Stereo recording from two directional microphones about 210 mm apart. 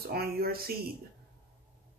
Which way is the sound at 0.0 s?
45° right (ahead or behind).